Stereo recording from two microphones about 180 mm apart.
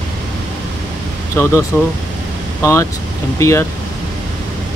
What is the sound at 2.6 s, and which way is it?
Speech, 15° left (ahead or behind).